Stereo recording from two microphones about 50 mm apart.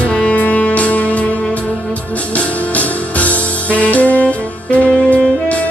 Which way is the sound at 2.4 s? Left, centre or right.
Left.